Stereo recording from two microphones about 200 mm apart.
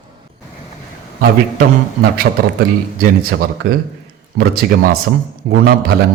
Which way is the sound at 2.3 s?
55° right (ahead or behind).